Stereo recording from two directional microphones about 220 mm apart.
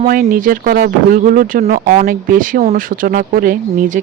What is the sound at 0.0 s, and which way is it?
Speech, 40° right (ahead or behind).